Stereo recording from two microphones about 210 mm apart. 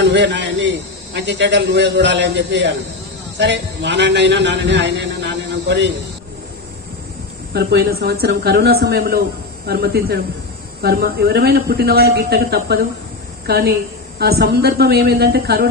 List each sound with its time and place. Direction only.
0.0 s a man's voice: 60° right (ahead or behind)
7.5 s a man's voice: 50° right (ahead or behind)